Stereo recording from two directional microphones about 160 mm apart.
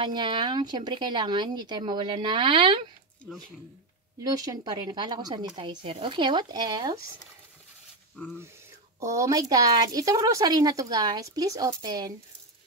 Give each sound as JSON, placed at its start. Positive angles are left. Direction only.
{"t": 0.0, "sound": "speech", "side_deg": -30}
{"t": 4.2, "sound": "speech", "side_deg": -25}
{"t": 9.0, "sound": "speech", "side_deg": -20}